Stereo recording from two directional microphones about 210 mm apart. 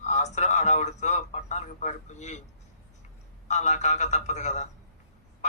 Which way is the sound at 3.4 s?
35° left (ahead or behind).